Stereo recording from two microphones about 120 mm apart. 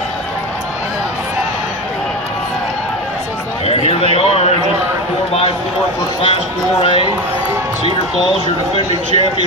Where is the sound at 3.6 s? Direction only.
55° left (ahead or behind).